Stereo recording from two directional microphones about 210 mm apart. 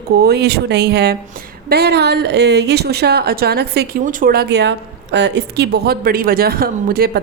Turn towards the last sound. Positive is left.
turn(degrees=-45)  # may be behind; listen again after turning